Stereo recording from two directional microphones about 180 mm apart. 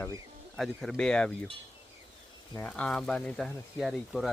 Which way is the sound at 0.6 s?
Centre (ahead or behind).